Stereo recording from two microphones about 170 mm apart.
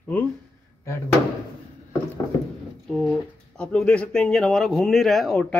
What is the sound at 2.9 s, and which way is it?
Speech, 5° left (ahead or behind).